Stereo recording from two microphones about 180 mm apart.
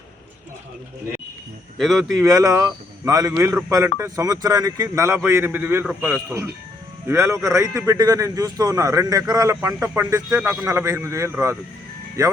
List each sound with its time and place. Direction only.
1.8 s speech: centre (ahead or behind)
2.2 s a man's voice: 20° right (ahead or behind)